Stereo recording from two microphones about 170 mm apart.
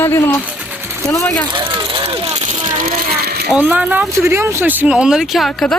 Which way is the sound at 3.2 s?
70° right (ahead or behind).